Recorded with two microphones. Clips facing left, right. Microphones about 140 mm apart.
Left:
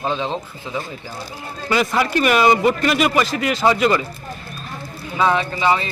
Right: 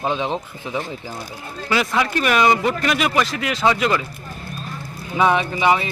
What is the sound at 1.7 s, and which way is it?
Speech, centre (ahead or behind).